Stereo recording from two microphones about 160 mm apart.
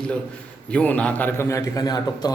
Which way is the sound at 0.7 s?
10° left (ahead or behind).